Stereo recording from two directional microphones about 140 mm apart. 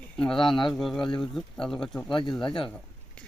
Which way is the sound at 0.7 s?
Centre (ahead or behind).